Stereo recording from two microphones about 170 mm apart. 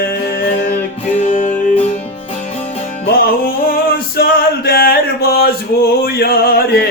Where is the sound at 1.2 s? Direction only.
45° left (ahead or behind).